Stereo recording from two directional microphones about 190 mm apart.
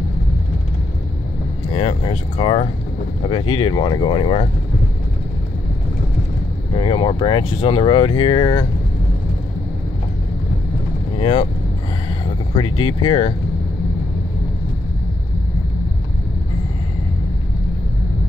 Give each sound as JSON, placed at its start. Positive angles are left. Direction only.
{"t": 1.7, "sound": "speech", "side_deg": 30}
{"t": 6.8, "sound": "speech", "side_deg": 25}
{"t": 11.1, "sound": "speech", "side_deg": 30}
{"t": 12.5, "sound": "speech", "side_deg": 25}